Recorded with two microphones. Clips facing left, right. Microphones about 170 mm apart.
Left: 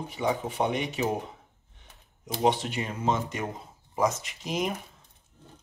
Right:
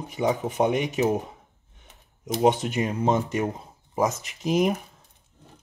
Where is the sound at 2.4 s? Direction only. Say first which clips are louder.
Right 4 dB; 45° right (ahead or behind).